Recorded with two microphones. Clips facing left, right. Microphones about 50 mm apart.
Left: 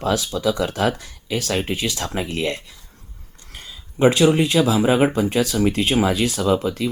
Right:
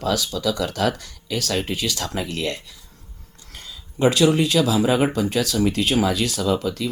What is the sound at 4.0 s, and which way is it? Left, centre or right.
Speech, left.